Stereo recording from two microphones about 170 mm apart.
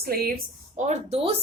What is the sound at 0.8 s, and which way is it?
Speech, 35° right (ahead or behind).